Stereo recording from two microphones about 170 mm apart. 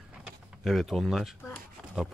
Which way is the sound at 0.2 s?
Centre (ahead or behind).